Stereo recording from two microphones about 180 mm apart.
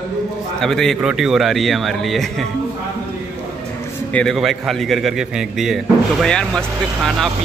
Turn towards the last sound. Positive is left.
turn(degrees=0)  # may be behind; listen again after turning